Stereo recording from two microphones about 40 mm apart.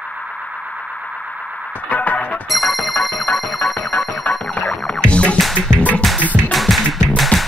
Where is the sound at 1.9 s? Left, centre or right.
Left.